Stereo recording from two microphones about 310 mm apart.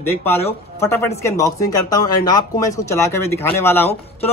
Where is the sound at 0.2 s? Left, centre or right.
Centre.